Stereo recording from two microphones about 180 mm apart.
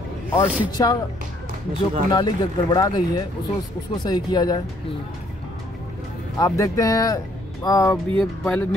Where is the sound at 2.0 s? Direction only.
25° left (ahead or behind).